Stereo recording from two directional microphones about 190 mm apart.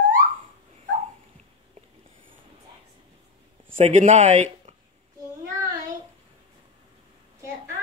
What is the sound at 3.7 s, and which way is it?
Speech, 40° right (ahead or behind).